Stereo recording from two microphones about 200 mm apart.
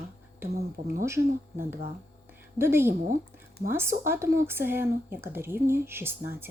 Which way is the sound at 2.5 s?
10° right (ahead or behind).